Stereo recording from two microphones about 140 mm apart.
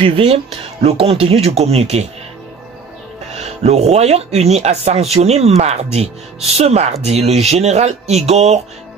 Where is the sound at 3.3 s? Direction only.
50° right (ahead or behind).